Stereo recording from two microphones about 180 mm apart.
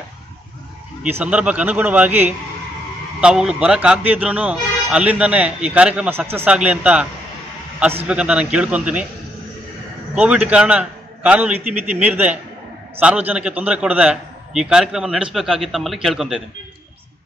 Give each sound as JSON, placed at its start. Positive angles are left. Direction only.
{"t": 1.0, "sound": "speech", "side_deg": -10}
{"t": 8.1, "sound": "a man's voice", "side_deg": -5}
{"t": 10.1, "sound": "a man's voice", "side_deg": -10}